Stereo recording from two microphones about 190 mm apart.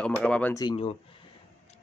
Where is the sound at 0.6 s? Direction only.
30° left (ahead or behind).